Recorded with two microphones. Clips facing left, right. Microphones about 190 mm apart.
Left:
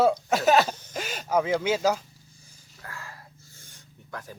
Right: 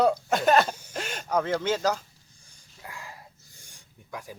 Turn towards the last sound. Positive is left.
turn(degrees=-10)  # may be behind; listen again after turning